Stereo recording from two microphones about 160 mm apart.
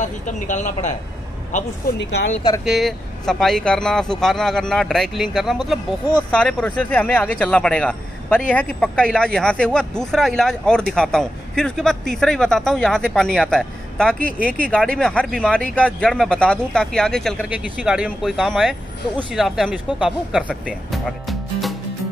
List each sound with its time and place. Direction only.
0.0 s speech: 50° left (ahead or behind)
2.6 s speech: centre (ahead or behind)
20.6 s music: centre (ahead or behind)